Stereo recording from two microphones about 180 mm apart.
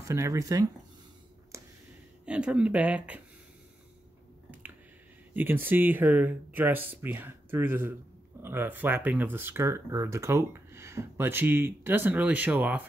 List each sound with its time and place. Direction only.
0.0 s speech: 15° right (ahead or behind)
1.5 s a sound: 15° right (ahead or behind)
2.2 s speech: 5° right (ahead or behind)
5.3 s speech: 10° right (ahead or behind)